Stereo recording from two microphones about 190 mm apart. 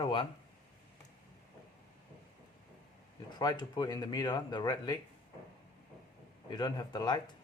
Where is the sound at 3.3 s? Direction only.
20° left (ahead or behind).